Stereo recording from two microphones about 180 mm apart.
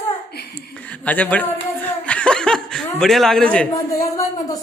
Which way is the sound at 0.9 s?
10° left (ahead or behind).